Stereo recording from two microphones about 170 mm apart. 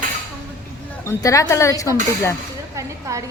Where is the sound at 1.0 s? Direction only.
20° left (ahead or behind).